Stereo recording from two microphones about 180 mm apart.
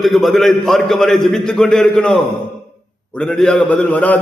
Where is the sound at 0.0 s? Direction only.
Centre (ahead or behind).